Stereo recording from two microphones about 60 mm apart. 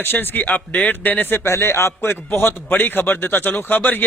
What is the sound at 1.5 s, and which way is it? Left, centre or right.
A man's voice, left.